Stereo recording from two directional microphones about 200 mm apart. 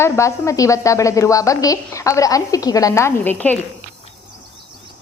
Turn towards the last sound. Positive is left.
turn(degrees=10)  # may be behind; listen again after turning